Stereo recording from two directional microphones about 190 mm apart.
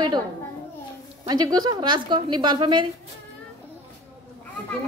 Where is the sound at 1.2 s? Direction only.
20° right (ahead or behind).